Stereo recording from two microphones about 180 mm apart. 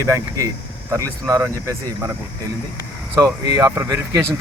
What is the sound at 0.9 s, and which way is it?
Speech, 20° right (ahead or behind).